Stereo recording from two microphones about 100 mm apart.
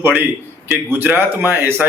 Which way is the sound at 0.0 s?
20° right (ahead or behind).